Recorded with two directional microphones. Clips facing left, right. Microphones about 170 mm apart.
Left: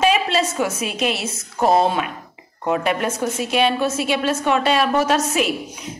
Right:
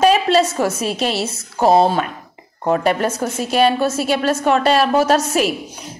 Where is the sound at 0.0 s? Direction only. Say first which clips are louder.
Right 5 dB; 40° right (ahead or behind).